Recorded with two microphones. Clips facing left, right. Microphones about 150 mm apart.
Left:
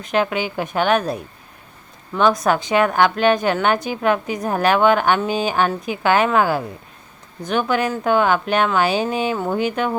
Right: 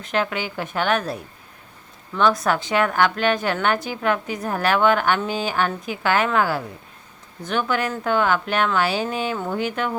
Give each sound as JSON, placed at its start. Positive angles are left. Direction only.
{"t": 0.0, "sound": "a woman's voice", "side_deg": 15}
{"t": 7.7, "sound": "a woman's voice", "side_deg": 15}